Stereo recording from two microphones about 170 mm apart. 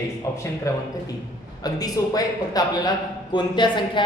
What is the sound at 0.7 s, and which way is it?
A woman's voice, 20° left (ahead or behind).